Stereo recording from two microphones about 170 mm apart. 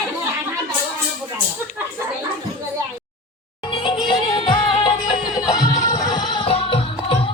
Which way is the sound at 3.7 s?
30° left (ahead or behind).